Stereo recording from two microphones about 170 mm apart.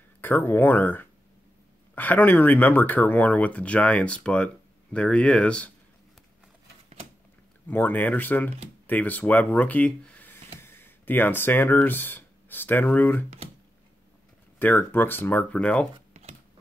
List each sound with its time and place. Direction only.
0.2 s speech: 10° left (ahead or behind)
7.6 s speech: 10° left (ahead or behind)
14.6 s speech: 10° left (ahead or behind)
16.1 s a sound: 40° right (ahead or behind)